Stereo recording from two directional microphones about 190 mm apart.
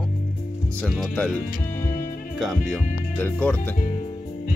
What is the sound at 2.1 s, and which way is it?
Music, 45° left (ahead or behind).